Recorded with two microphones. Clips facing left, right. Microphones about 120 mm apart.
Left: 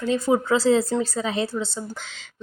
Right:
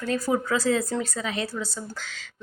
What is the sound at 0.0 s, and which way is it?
A woman's voice, 25° left (ahead or behind).